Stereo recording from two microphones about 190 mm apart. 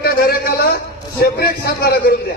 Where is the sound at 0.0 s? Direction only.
55° left (ahead or behind).